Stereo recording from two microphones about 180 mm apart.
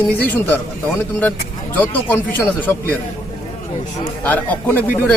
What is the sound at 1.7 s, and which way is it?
A man's voice, 10° left (ahead or behind).